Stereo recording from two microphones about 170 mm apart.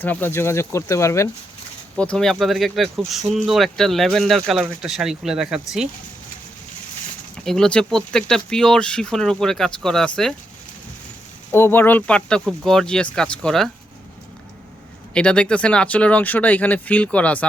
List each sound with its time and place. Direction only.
0.0 s speech: 10° left (ahead or behind)
2.0 s speech: 5° left (ahead or behind)
7.4 s speech: 5° left (ahead or behind)
11.5 s speech: 15° left (ahead or behind)
15.1 s speech: 5° left (ahead or behind)